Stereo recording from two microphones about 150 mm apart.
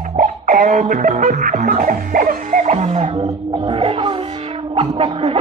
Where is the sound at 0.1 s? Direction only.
55° right (ahead or behind).